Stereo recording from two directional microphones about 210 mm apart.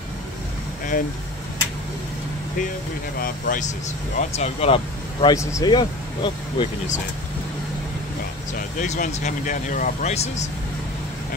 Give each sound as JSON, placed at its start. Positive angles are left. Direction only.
{"t": 3.2, "sound": "speech", "side_deg": 40}
{"t": 4.2, "sound": "speech", "side_deg": 30}
{"t": 5.2, "sound": "speech", "side_deg": 15}
{"t": 8.5, "sound": "speech", "side_deg": 35}